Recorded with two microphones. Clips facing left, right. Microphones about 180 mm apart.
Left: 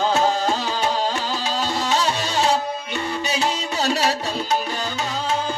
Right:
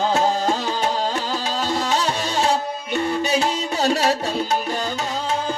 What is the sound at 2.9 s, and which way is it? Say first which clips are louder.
Music: right 7 dB; 55° right (ahead or behind).